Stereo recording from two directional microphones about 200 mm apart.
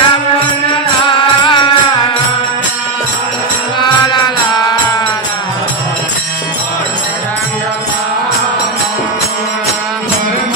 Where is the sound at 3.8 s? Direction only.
20° left (ahead or behind).